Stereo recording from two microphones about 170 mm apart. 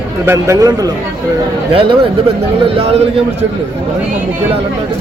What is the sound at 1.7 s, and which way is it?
Speech, 30° right (ahead or behind).